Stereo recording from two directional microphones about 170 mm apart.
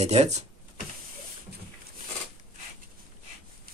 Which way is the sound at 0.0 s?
40° right (ahead or behind).